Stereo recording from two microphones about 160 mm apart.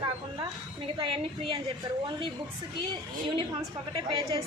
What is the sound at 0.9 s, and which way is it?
Speech, 35° right (ahead or behind).